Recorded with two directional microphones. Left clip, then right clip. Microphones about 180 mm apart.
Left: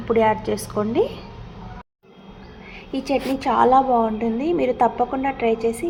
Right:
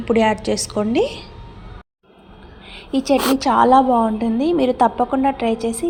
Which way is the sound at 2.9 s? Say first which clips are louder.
Right 6 dB; 30° right (ahead or behind).